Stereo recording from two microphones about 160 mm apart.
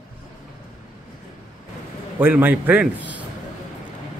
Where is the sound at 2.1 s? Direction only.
10° right (ahead or behind).